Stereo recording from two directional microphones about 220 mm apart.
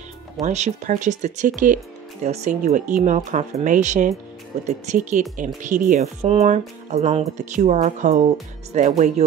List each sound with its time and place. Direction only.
0.4 s speech: 35° right (ahead or behind)